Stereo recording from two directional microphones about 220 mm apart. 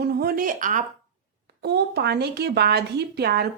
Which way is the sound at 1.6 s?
50° right (ahead or behind).